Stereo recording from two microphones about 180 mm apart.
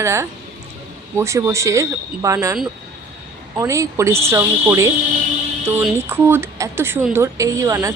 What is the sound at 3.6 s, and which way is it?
Speech, 15° right (ahead or behind).